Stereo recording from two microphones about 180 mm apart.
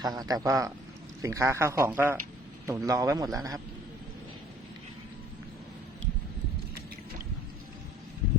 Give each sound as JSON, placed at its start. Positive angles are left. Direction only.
{"t": 0.0, "sound": "a man's voice", "side_deg": -20}